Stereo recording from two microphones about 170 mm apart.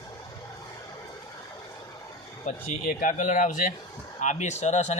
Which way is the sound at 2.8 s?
50° left (ahead or behind).